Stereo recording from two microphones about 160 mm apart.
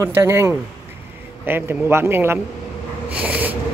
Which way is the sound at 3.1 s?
10° right (ahead or behind).